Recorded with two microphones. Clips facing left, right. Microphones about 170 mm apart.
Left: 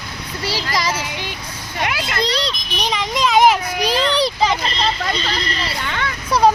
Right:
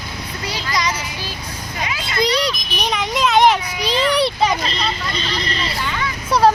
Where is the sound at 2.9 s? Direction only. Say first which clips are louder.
Even; centre (ahead or behind).